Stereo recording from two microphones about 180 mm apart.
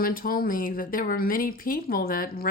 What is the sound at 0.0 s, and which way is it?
Speech, 55° left (ahead or behind).